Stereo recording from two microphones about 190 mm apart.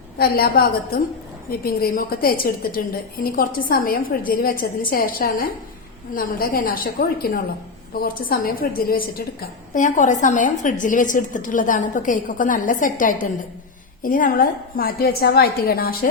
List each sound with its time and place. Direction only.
0.2 s a woman's voice: 55° left (ahead or behind)